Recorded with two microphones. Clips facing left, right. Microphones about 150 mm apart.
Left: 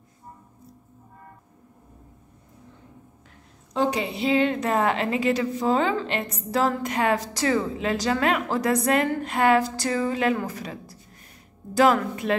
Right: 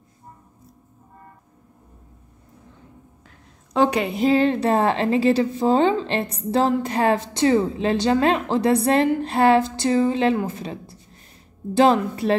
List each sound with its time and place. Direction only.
3.7 s a woman's voice: 65° right (ahead or behind); by 12.4 s 30° right (ahead or behind)